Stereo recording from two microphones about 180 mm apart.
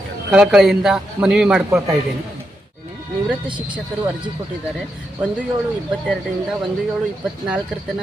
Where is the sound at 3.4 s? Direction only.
25° right (ahead or behind).